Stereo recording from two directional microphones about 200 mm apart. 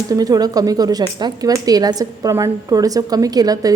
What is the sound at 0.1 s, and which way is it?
Speech, 20° right (ahead or behind).